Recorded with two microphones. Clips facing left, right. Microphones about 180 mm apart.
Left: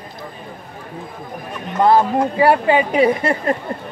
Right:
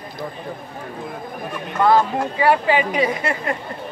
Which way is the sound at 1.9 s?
35° left (ahead or behind).